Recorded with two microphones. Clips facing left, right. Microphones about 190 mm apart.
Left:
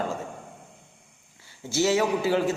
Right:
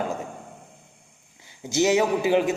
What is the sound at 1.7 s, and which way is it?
Speech, 20° right (ahead or behind).